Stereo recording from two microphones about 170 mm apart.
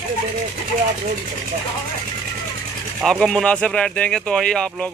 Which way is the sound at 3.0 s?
Centre (ahead or behind).